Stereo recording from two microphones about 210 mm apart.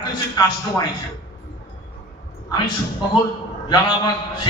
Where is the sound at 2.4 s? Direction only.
20° left (ahead or behind).